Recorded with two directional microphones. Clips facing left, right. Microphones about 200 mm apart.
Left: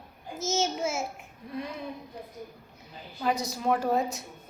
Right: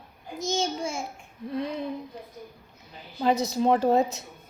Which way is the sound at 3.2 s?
25° right (ahead or behind).